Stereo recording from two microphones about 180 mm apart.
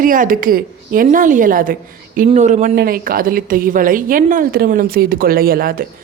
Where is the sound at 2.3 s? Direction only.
40° right (ahead or behind).